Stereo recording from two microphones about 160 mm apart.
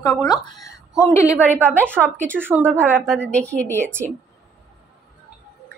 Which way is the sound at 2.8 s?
10° left (ahead or behind).